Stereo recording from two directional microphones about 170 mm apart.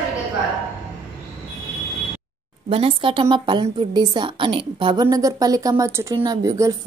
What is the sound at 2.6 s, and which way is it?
A woman's voice, 35° right (ahead or behind).